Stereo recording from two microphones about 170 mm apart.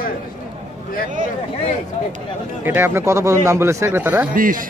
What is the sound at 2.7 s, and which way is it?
Speech, 15° right (ahead or behind).